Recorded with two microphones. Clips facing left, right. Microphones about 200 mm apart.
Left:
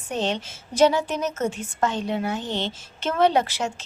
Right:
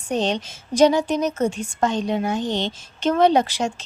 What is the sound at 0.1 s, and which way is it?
A woman's voice, 15° right (ahead or behind).